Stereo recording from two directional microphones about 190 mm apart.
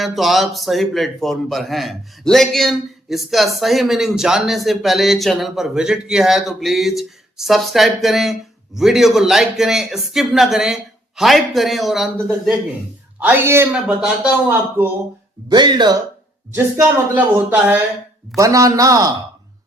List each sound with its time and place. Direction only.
0.0 s a man's voice: centre (ahead or behind)
13.1 s speech: 10° right (ahead or behind)
15.4 s speech: 25° right (ahead or behind)
16.6 s speech: 10° right (ahead or behind)